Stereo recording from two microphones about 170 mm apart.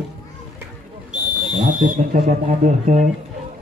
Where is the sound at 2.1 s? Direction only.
55° right (ahead or behind).